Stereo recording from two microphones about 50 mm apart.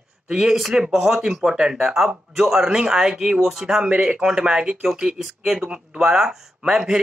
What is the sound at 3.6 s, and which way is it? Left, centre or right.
Speech, centre.